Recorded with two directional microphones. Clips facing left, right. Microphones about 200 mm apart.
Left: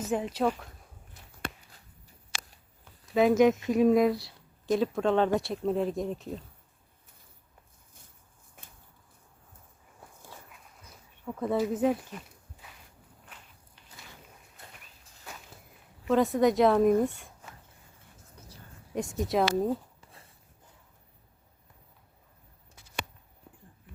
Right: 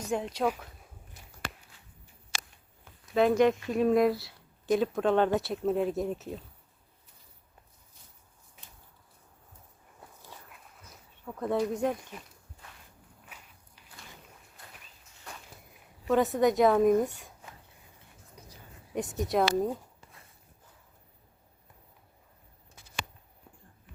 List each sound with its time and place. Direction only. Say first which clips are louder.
0.0 s speech: left 2 dB; 5° left (ahead or behind)
0.4 s speech: left 1 dB; 10° right (ahead or behind)
3.2 s speech: left 2 dB; 5° left (ahead or behind)
8.6 s a sound: left 2 dB; 50° left (ahead or behind)
11.3 s speech: left 1 dB; 5° left (ahead or behind)
13.2 s walk: even; 5° right (ahead or behind)
16.0 s speech: left 1 dB; centre (ahead or behind)
18.9 s speech: even; centre (ahead or behind)